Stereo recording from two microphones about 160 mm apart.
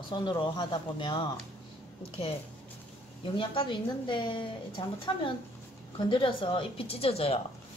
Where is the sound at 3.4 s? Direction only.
30° left (ahead or behind).